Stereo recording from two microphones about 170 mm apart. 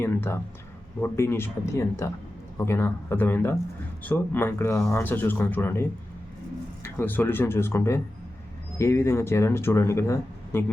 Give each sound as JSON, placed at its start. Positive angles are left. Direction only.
{"t": 0.0, "sound": "a sound", "side_deg": 15}
{"t": 1.0, "sound": "speech", "side_deg": 15}
{"t": 6.8, "sound": "speech", "side_deg": 15}